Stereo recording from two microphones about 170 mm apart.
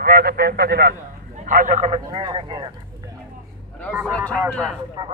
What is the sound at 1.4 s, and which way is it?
Speech, 50° right (ahead or behind).